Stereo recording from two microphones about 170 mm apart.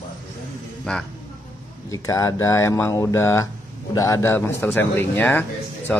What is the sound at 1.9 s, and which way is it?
Speech, 20° left (ahead or behind).